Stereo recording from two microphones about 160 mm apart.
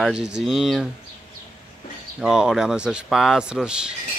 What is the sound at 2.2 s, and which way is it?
Speech, 5° right (ahead or behind).